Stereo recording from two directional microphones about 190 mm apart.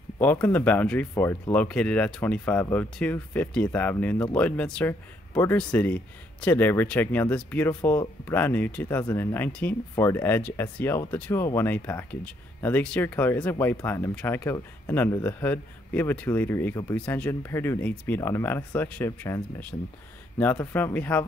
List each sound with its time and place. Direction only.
0.2 s speech: 10° left (ahead or behind)